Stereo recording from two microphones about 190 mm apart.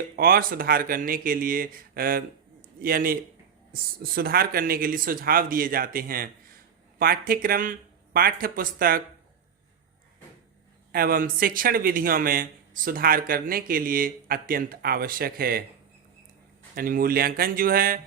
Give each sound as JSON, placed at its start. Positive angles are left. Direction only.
{"t": 0.2, "sound": "a man's voice", "side_deg": -50}
{"t": 10.9, "sound": "a man's voice", "side_deg": -50}
{"t": 16.7, "sound": "a man's voice", "side_deg": -50}